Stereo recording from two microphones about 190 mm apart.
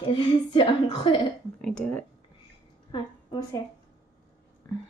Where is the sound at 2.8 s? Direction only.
25° left (ahead or behind).